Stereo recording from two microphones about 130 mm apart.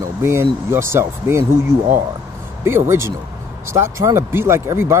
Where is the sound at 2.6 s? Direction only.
20° right (ahead or behind).